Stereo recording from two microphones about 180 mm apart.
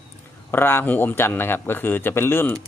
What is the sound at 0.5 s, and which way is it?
Speech, 10° left (ahead or behind).